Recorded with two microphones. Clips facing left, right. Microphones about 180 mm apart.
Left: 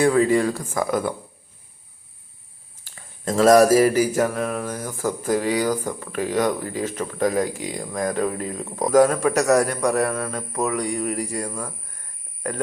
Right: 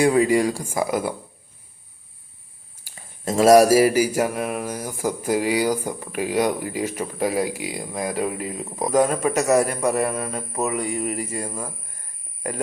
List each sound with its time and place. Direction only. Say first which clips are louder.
0.0 s mantra: even; 10° right (ahead or behind)
0.6 s speech: right 1 dB; 25° right (ahead or behind)
0.9 s mantra: left 2 dB; 10° right (ahead or behind)
2.8 s mantra: even; 10° right (ahead or behind)